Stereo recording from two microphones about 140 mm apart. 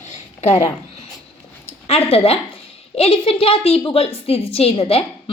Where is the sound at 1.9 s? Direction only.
45° left (ahead or behind).